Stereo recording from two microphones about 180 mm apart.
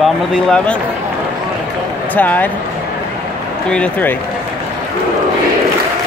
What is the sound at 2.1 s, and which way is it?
Speech, 10° left (ahead or behind).